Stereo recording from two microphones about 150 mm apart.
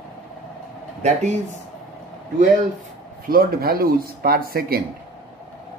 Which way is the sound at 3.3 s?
80° right.